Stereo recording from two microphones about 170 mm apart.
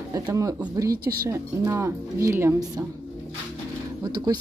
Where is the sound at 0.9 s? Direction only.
60° right (ahead or behind).